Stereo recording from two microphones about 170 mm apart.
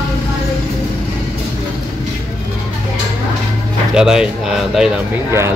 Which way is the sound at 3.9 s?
5° right (ahead or behind).